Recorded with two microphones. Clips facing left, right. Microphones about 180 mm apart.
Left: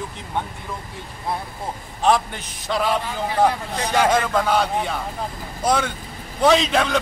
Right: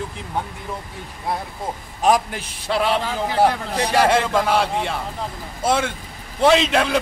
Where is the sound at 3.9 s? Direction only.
30° right (ahead or behind).